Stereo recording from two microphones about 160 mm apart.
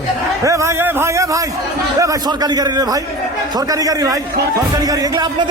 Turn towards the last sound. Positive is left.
turn(degrees=-20)  # may be behind; listen again after turning